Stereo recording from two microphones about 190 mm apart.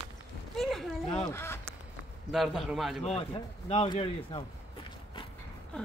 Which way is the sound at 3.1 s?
30° left (ahead or behind).